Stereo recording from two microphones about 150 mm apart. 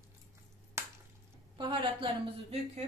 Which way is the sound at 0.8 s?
15° right (ahead or behind).